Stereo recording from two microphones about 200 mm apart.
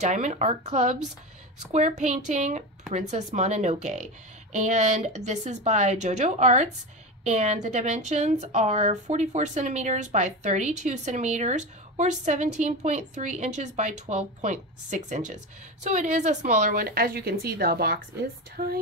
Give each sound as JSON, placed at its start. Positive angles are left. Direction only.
{"t": 0.0, "sound": "a woman's voice", "side_deg": -35}